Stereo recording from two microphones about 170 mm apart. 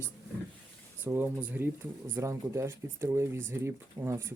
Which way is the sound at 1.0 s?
15° right (ahead or behind).